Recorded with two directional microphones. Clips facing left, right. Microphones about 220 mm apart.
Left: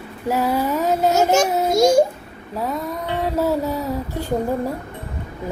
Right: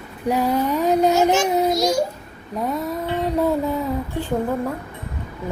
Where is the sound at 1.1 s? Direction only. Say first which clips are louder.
Even; 45° left (ahead or behind).